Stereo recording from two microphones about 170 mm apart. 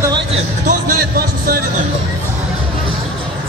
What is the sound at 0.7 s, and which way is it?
Music, 60° right (ahead or behind).